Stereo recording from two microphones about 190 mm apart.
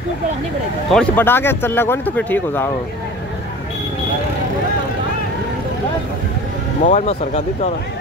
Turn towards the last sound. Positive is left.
turn(degrees=40)  # may be behind; listen again after turning